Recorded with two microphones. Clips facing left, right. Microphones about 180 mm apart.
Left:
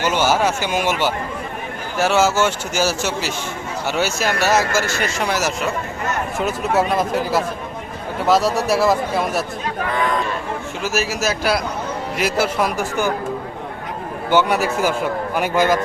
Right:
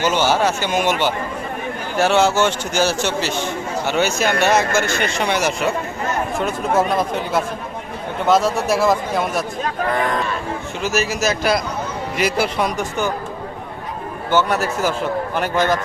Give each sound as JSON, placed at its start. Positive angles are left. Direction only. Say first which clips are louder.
{"t": 0.0, "sound": "a man's voice", "louder": "even", "side_deg": 10}
{"t": 10.8, "sound": "speech", "louder": "right 2 dB", "side_deg": 5}
{"t": 14.3, "sound": "a man's voice", "louder": "left 1 dB", "side_deg": 10}